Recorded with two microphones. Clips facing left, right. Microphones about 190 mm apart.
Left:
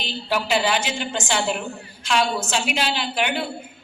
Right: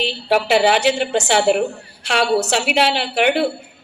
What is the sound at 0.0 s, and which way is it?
A woman's voice, 70° right (ahead or behind).